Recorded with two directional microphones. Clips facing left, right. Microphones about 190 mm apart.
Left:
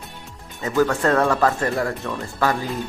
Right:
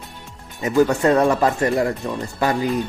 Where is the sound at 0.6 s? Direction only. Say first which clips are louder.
Right 3 dB; 20° right (ahead or behind).